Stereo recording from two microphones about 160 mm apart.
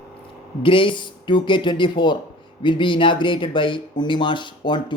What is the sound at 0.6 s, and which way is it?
A man's voice, 30° left (ahead or behind).